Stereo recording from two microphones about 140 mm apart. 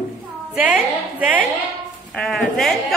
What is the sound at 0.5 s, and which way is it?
Speech, 10° right (ahead or behind).